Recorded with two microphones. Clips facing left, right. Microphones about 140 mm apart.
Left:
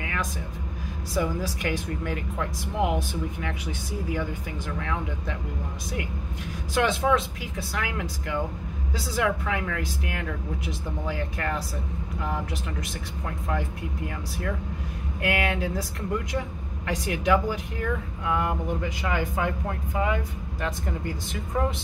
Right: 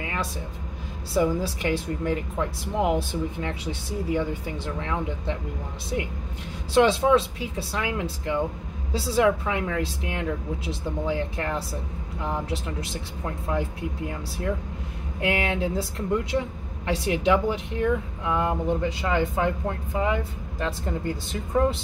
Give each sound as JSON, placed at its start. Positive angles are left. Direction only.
{"t": 0.0, "sound": "a sound", "side_deg": -30}
{"t": 1.1, "sound": "speech", "side_deg": -30}
{"t": 6.7, "sound": "speech", "side_deg": -30}